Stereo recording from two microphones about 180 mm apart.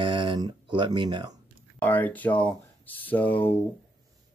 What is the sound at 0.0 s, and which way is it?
Speech, 25° right (ahead or behind).